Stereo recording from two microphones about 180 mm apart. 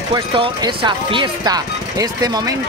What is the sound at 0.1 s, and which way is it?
Speech, 25° right (ahead or behind).